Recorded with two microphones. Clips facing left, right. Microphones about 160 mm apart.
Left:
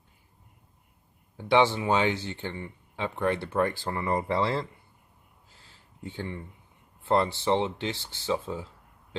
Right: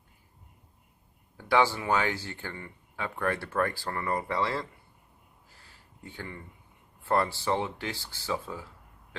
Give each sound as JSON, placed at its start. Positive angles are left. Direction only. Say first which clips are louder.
{"t": 1.4, "sound": "speech", "louder": "left 3 dB", "side_deg": 25}
{"t": 5.6, "sound": "a sound", "louder": "left 6 dB", "side_deg": 25}
{"t": 7.0, "sound": "speech", "louder": "left 3 dB", "side_deg": 20}